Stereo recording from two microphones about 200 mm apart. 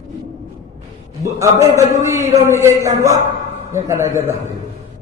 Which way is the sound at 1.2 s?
15° right (ahead or behind).